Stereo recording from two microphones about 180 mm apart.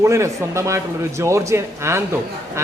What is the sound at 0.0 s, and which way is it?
A man's voice, 15° right (ahead or behind).